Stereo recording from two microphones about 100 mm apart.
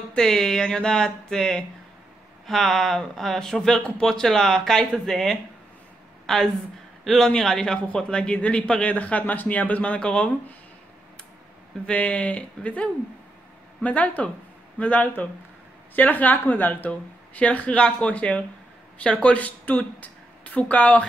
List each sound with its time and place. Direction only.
0.1 s a man's voice: 5° left (ahead or behind)
11.8 s a man's voice: 10° left (ahead or behind)